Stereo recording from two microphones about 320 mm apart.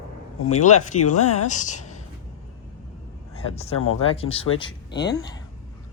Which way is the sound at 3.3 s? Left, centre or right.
Centre.